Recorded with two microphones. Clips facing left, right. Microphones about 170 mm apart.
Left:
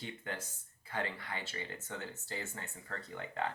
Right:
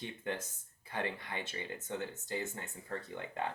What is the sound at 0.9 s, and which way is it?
Speech, 20° right (ahead or behind).